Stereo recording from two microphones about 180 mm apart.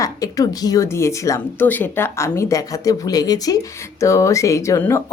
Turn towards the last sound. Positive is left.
turn(degrees=15)  # may be behind; listen again after turning